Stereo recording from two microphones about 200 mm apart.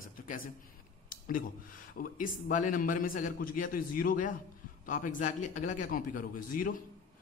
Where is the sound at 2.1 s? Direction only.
40° left (ahead or behind).